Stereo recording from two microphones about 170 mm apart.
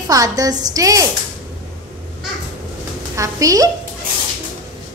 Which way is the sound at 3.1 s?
20° right (ahead or behind).